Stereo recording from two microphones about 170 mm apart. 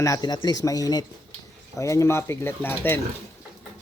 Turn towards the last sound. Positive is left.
turn(degrees=10)  # may be behind; listen again after turning